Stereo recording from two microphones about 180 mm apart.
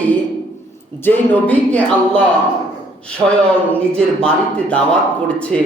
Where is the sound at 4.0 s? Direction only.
5° left (ahead or behind).